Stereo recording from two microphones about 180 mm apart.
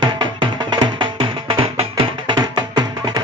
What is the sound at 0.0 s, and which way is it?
Music, 25° right (ahead or behind).